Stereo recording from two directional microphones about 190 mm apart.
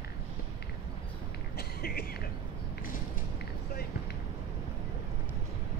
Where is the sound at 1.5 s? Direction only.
55° left (ahead or behind).